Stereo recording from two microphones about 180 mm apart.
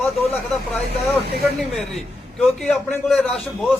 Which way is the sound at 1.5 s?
Centre (ahead or behind).